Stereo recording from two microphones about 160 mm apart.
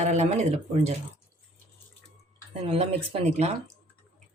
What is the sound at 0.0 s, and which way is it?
Speech, 45° right (ahead or behind).